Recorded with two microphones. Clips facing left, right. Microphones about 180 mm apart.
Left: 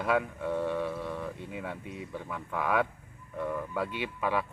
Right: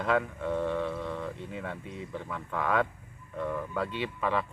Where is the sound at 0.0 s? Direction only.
10° left (ahead or behind).